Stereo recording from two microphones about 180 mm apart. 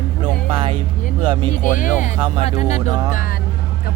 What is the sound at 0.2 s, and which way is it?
Music, 30° right (ahead or behind).